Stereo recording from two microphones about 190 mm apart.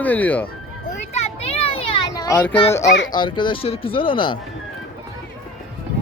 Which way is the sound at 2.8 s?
70° left (ahead or behind).